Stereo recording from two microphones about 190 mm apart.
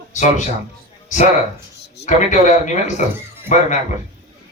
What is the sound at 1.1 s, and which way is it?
A man's voice, 40° left (ahead or behind).